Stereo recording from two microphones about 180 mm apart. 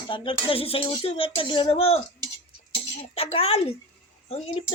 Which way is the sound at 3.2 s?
35° left (ahead or behind).